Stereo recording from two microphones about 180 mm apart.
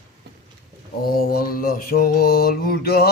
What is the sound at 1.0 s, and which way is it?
Mantra, 55° left (ahead or behind).